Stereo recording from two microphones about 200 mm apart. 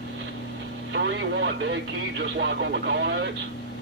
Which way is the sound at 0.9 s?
65° right (ahead or behind).